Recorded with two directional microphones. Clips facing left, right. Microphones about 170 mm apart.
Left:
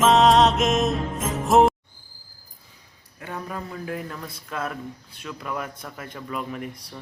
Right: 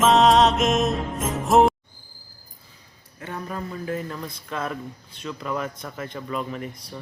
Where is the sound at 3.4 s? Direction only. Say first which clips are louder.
Right 4 dB; 5° left (ahead or behind).